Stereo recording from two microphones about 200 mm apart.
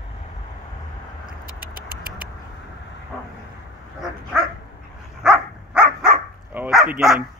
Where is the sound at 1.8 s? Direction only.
45° right (ahead or behind).